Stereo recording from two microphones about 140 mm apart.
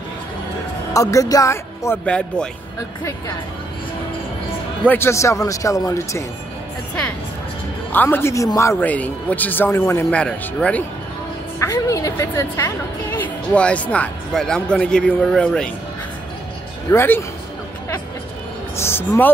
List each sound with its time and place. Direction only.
0.9 s speech: 25° left (ahead or behind)
2.0 s a woman's voice: 5° left (ahead or behind)
4.8 s speech: 15° left (ahead or behind)
7.9 s a woman's voice: 15° left (ahead or behind)
10.0 s a woman's voice: 5° left (ahead or behind)
11.6 s a woman's voice: 25° left (ahead or behind); by 15.7 s 5° left (ahead or behind)
16.9 s a woman's voice: 15° left (ahead or behind)
18.8 s speech: 15° left (ahead or behind)